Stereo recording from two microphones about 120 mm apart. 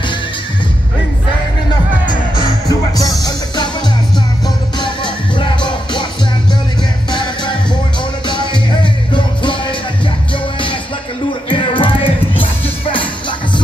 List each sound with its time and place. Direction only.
2.0 s music: 40° left (ahead or behind)
4.7 s music: 40° left (ahead or behind)
7.1 s music: 40° left (ahead or behind)
9.1 s music: 40° left (ahead or behind)
11.4 s music: 45° left (ahead or behind)